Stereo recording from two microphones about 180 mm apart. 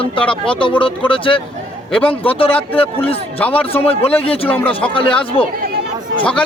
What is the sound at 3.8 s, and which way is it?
Speech, 35° left (ahead or behind).